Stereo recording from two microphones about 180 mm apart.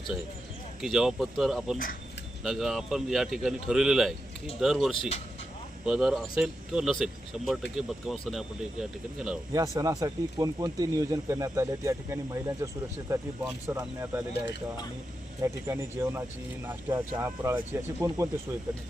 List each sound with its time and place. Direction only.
0.8 s speech: centre (ahead or behind)
9.5 s speech: 20° right (ahead or behind)
15.4 s speech: 15° right (ahead or behind)